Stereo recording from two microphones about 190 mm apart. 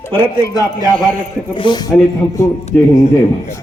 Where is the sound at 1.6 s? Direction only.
25° left (ahead or behind).